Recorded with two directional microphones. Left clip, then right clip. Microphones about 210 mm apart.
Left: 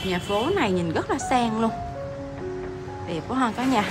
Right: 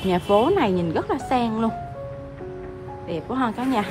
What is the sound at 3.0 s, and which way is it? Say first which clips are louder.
Speech: even; 5° right (ahead or behind).